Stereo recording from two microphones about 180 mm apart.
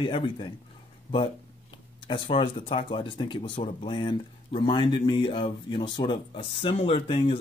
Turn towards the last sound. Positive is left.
turn(degrees=30)  # may be behind; listen again after turning